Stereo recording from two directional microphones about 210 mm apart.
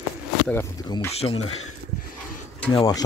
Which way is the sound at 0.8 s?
20° left (ahead or behind).